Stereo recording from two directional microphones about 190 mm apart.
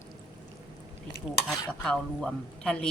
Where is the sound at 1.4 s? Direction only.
Centre (ahead or behind).